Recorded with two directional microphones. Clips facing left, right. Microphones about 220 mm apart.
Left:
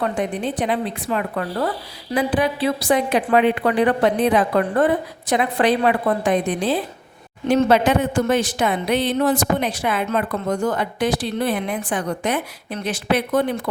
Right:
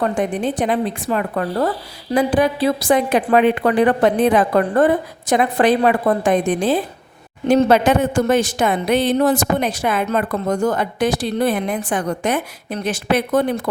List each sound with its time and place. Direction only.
0.0 s speech: 45° right (ahead or behind)